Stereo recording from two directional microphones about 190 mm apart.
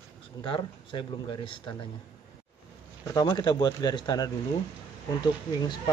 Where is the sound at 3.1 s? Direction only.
20° left (ahead or behind).